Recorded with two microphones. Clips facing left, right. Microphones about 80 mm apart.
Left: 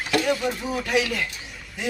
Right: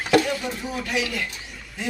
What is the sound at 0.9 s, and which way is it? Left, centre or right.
Speech, left.